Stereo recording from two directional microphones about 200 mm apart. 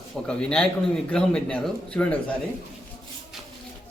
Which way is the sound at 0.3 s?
5° left (ahead or behind).